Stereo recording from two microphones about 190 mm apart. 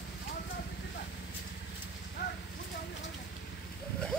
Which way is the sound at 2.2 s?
65° left (ahead or behind).